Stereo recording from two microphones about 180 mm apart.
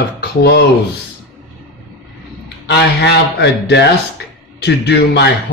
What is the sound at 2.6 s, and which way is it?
A man's voice, 70° left (ahead or behind).